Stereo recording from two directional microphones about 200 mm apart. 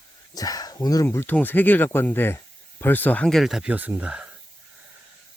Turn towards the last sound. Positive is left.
turn(degrees=-5)  # may be behind; listen again after turning